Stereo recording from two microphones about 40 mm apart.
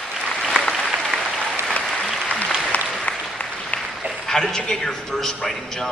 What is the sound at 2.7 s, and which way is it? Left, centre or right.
Applause, left.